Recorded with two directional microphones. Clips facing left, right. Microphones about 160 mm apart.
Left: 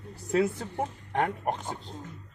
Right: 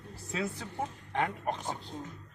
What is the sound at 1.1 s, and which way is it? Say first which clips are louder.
Speech: left 3 dB; 55° left (ahead or behind).